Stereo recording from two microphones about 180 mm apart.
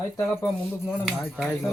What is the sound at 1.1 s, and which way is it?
Speech, 5° right (ahead or behind).